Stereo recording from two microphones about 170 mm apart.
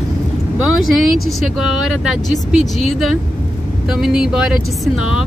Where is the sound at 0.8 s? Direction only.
Centre (ahead or behind).